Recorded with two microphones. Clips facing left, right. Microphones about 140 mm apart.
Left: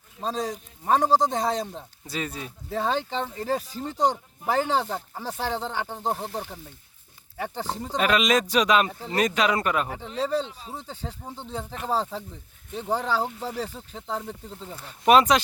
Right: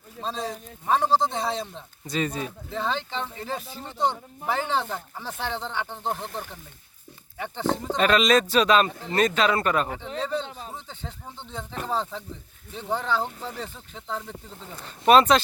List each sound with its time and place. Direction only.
0.2 s speech: 45° left (ahead or behind)
1.6 s speech: 5° left (ahead or behind)
3.1 s speech: 40° left (ahead or behind)
7.9 s speech: 10° left (ahead or behind)
10.2 s speech: 35° left (ahead or behind)
14.8 s speech: 10° left (ahead or behind)